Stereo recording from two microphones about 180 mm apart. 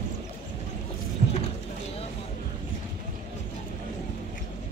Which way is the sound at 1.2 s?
50° right (ahead or behind).